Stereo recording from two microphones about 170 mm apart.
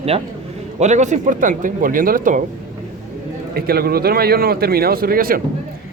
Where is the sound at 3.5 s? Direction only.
65° right (ahead or behind).